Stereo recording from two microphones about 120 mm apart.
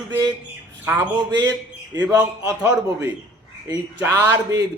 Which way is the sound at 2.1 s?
30° right (ahead or behind).